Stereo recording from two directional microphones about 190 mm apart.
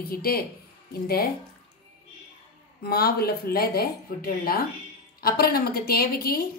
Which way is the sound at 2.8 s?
55° left (ahead or behind).